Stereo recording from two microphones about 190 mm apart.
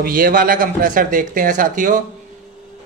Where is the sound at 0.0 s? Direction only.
50° right (ahead or behind).